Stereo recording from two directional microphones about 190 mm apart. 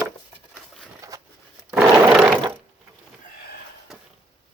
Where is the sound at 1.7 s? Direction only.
5° right (ahead or behind).